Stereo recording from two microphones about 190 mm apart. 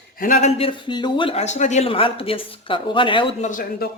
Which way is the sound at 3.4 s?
45° left (ahead or behind).